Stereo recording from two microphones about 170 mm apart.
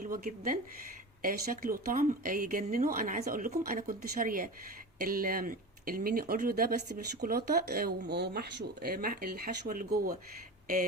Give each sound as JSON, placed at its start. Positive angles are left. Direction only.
{"t": 0.0, "sound": "speech", "side_deg": -55}